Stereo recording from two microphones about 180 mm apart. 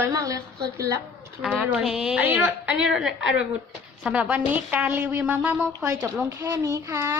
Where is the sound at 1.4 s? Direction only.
5° right (ahead or behind).